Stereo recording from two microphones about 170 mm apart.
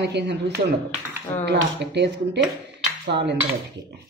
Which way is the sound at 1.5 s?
90° right.